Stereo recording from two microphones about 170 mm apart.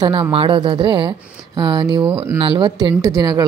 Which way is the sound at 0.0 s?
30° right (ahead or behind).